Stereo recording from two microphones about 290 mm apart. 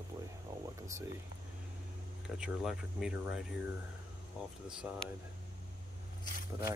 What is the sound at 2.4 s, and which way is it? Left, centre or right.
Speech, centre.